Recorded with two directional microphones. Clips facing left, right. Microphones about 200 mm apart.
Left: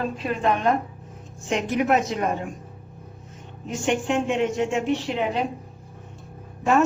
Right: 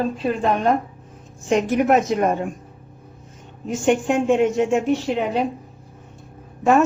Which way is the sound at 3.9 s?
45° right (ahead or behind).